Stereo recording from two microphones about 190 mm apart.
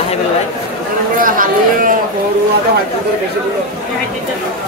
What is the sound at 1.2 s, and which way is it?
Speech, 45° right (ahead or behind).